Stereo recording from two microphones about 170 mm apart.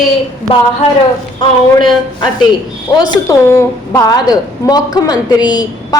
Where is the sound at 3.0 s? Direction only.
20° left (ahead or behind).